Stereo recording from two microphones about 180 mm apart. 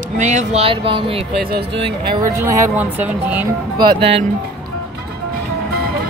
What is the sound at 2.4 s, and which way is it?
Speech, 10° right (ahead or behind).